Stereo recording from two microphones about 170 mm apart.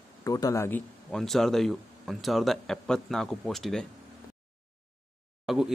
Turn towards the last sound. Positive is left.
turn(degrees=0)  # may be behind; listen again after turning